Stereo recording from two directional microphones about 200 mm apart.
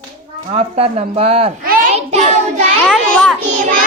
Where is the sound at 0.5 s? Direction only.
30° right (ahead or behind).